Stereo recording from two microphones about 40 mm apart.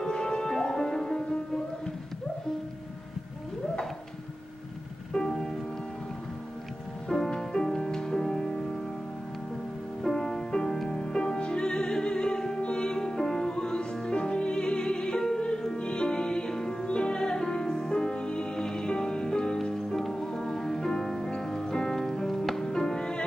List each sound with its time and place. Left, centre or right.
0.0 s music: centre
5.3 s music: centre
7.1 s music: centre
10.0 s music: centre